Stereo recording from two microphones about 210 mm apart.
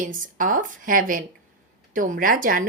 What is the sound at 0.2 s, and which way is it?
A woman's voice, 40° right (ahead or behind).